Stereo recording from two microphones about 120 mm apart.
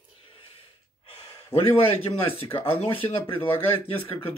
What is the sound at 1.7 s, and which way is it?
Speech, 50° left (ahead or behind).